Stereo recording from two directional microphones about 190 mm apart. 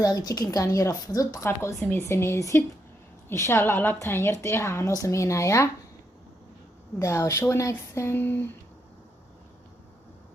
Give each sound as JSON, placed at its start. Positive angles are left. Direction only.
{"t": 0.0, "sound": "a woman's voice", "side_deg": 20}
{"t": 7.0, "sound": "a woman's voice", "side_deg": 15}